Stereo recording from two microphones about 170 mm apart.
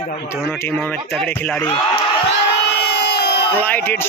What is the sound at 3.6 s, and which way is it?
Speech, 10° left (ahead or behind).